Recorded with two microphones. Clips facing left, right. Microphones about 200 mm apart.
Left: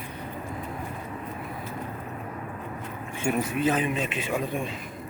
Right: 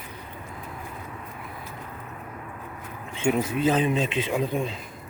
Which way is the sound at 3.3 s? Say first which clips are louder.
Right 3 dB; 15° right (ahead or behind).